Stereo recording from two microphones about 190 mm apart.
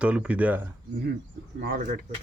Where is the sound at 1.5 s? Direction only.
55° right (ahead or behind).